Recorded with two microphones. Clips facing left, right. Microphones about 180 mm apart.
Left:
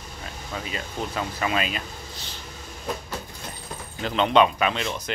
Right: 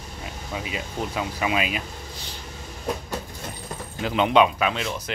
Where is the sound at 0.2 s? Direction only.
10° right (ahead or behind).